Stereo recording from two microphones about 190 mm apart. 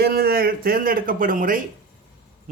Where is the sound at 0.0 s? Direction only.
55° right (ahead or behind).